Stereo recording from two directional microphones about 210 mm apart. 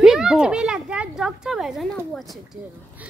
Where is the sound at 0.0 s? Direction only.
5° right (ahead or behind).